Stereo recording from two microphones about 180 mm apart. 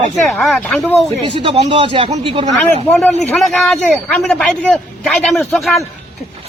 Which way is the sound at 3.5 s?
Centre (ahead or behind).